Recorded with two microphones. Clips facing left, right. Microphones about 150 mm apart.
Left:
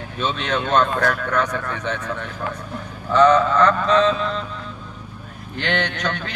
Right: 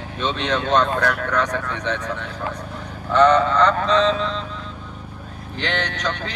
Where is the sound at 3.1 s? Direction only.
10° left (ahead or behind).